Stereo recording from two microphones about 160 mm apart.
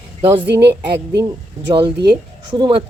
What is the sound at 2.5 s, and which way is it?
Speech, 30° right (ahead or behind).